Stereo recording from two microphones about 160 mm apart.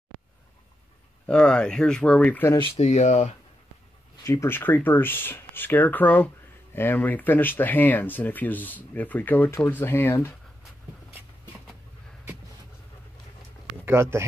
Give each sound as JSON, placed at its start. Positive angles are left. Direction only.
{"t": 1.2, "sound": "speech", "side_deg": 5}
{"t": 2.5, "sound": "speech", "side_deg": 25}
{"t": 2.8, "sound": "speech", "side_deg": 45}
{"t": 4.2, "sound": "speech", "side_deg": 20}